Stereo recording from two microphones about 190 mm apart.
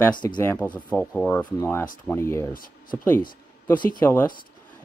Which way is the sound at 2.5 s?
50° left (ahead or behind).